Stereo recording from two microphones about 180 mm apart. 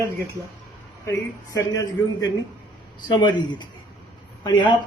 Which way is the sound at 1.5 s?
20° left (ahead or behind).